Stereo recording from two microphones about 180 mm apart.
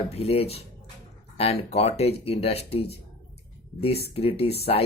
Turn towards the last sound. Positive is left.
turn(degrees=35)  # may be behind; listen again after turning